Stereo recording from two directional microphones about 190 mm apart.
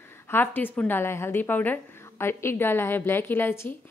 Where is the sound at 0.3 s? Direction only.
10° left (ahead or behind).